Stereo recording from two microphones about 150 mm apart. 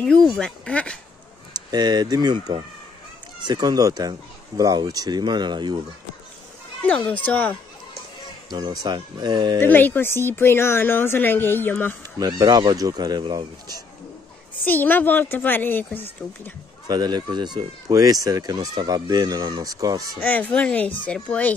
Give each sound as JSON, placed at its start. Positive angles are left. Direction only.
{"t": 0.0, "sound": "speech", "side_deg": 5}
{"t": 1.5, "sound": "speech", "side_deg": -25}
{"t": 7.1, "sound": "speech", "side_deg": 10}
{"t": 8.5, "sound": "speech", "side_deg": -30}
{"t": 9.6, "sound": "speech", "side_deg": 15}
{"t": 12.2, "sound": "speech", "side_deg": -25}
{"t": 14.6, "sound": "speech", "side_deg": 15}
{"t": 16.8, "sound": "speech", "side_deg": -25}
{"t": 20.2, "sound": "speech", "side_deg": 10}